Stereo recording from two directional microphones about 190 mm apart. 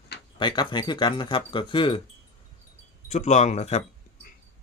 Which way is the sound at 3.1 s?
35° left (ahead or behind).